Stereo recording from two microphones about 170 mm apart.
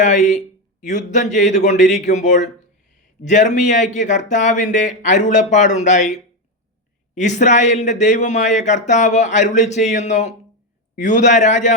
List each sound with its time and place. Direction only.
0.0 s speech: 45° left (ahead or behind)
7.2 s speech: 45° left (ahead or behind)